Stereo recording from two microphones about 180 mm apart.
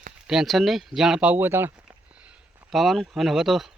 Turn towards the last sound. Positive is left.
turn(degrees=0)  # may be behind; listen again after turning